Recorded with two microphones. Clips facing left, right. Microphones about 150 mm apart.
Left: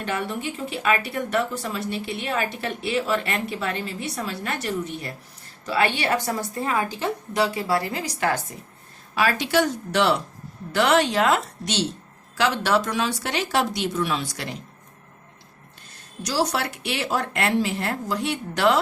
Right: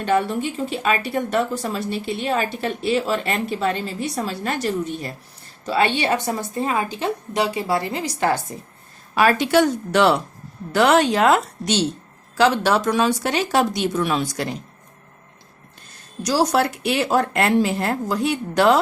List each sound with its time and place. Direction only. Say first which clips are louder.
0.0 s a woman's voice: right 7 dB; 35° right (ahead or behind)
9.1 s speech: right 5 dB; 50° right (ahead or behind)
16.2 s speech: right 6 dB; 45° right (ahead or behind)